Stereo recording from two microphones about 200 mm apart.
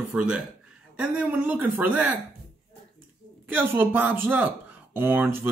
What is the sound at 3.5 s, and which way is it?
Speech, 10° right (ahead or behind).